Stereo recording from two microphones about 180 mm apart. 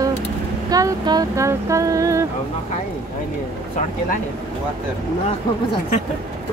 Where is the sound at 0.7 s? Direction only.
20° right (ahead or behind).